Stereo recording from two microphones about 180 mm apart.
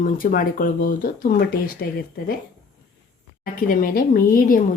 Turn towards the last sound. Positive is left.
turn(degrees=50)  # may be behind; listen again after turning